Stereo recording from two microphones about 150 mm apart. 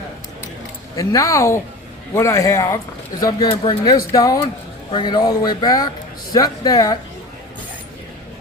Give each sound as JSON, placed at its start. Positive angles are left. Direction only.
{"t": 0.9, "sound": "speech", "side_deg": 20}
{"t": 3.5, "sound": "speech", "side_deg": 35}